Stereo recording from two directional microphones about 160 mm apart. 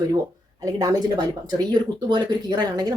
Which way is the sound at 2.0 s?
30° right (ahead or behind).